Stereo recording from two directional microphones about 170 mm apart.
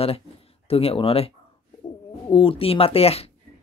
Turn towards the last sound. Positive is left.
turn(degrees=35)  # may be behind; listen again after turning